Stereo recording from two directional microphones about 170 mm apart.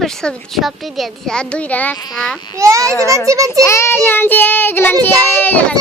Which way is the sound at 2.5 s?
20° right (ahead or behind).